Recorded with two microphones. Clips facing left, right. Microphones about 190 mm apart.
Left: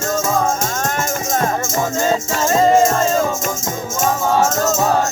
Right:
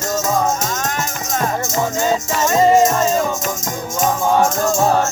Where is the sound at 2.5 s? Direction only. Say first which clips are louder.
Even; 10° right (ahead or behind).